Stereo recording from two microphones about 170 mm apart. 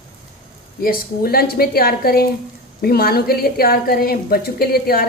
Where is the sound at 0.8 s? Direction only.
60° left (ahead or behind).